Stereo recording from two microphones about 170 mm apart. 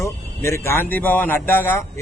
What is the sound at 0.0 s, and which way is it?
Speech, 15° left (ahead or behind).